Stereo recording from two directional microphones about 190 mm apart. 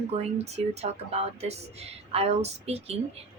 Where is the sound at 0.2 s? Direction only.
35° right (ahead or behind).